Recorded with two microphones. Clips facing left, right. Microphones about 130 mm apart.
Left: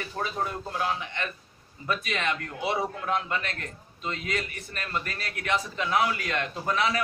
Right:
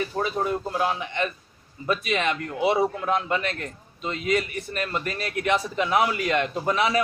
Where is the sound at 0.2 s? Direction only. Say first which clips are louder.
Right 4 dB; 15° right (ahead or behind).